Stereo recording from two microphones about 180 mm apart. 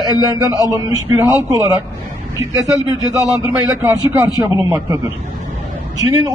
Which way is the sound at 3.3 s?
15° right (ahead or behind).